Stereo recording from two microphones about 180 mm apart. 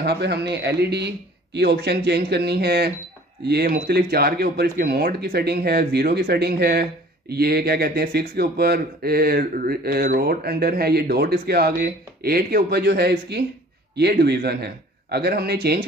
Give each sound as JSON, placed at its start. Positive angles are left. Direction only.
{"t": 0.0, "sound": "speech", "side_deg": -65}